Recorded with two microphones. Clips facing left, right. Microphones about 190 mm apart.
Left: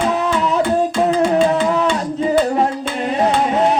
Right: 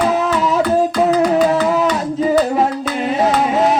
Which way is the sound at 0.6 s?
25° left (ahead or behind).